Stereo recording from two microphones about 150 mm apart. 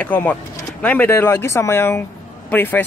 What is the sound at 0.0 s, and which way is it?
Speech, 10° left (ahead or behind).